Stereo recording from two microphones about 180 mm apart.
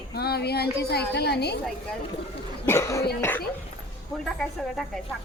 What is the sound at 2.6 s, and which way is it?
Speech, 15° left (ahead or behind).